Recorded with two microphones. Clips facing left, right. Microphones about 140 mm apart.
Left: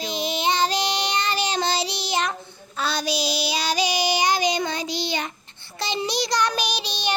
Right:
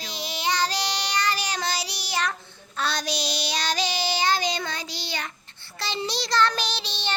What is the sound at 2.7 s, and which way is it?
Child singing, 5° left (ahead or behind).